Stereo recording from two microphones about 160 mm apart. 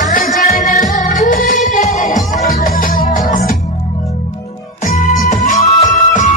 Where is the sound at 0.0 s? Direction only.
60° left (ahead or behind).